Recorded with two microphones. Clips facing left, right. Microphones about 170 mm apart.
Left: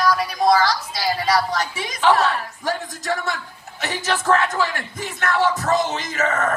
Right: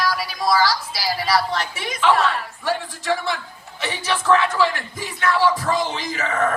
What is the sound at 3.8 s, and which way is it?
Speech, 45° left (ahead or behind).